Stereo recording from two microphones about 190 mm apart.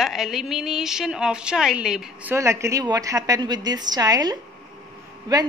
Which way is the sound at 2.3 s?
15° right (ahead or behind).